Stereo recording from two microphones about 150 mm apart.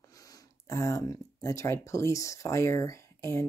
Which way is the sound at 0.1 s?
25° left (ahead or behind).